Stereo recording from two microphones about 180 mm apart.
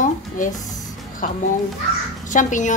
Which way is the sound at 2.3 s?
45° left (ahead or behind).